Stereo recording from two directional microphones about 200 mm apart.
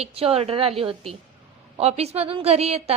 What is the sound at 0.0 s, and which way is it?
A woman's voice, 30° right (ahead or behind).